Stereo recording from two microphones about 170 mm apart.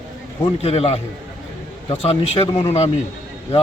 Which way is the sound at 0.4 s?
35° left (ahead or behind).